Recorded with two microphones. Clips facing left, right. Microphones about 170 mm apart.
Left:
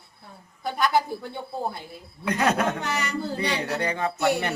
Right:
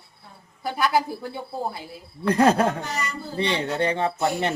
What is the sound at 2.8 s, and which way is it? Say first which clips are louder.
Speech: left 1 dB; 70° left (ahead or behind).